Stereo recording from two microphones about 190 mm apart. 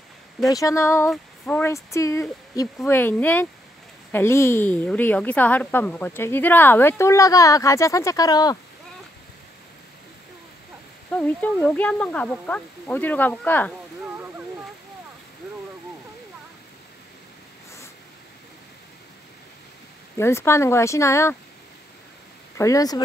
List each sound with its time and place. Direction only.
0.5 s a woman's voice: 15° left (ahead or behind)
11.1 s a woman's voice: 5° left (ahead or behind)
20.2 s a woman's voice: 15° left (ahead or behind)
22.6 s speech: 20° left (ahead or behind)